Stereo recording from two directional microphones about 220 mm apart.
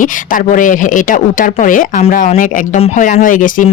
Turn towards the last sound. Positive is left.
turn(degrees=35)  # may be behind; listen again after turning